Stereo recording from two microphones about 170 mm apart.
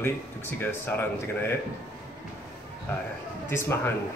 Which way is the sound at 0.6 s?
10° left (ahead or behind).